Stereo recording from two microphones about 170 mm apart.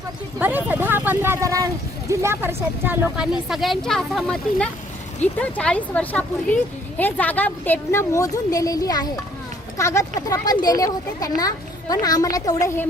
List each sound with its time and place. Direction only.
0.3 s a woman's voice: 10° right (ahead or behind); by 12.9 s 15° left (ahead or behind)